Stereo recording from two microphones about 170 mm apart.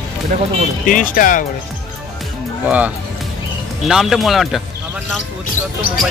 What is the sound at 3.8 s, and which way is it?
Speech, centre (ahead or behind).